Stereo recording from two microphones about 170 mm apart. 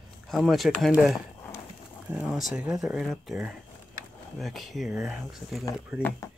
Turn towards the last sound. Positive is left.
turn(degrees=-5)  # may be behind; listen again after turning